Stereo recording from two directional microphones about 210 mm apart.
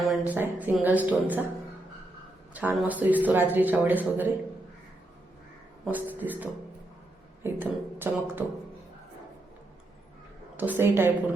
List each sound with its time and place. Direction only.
0.0 s speech: 10° right (ahead or behind)
2.5 s speech: 5° right (ahead or behind)
5.8 s speech: 10° right (ahead or behind)
10.6 s speech: 10° right (ahead or behind)